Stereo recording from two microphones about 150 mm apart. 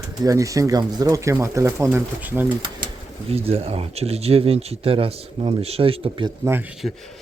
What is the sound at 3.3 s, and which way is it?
Speech, 40° right (ahead or behind).